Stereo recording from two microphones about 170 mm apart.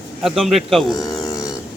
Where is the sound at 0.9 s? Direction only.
20° left (ahead or behind).